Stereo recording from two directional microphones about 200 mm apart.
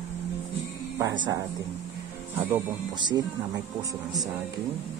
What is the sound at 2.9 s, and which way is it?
Speech, 20° right (ahead or behind).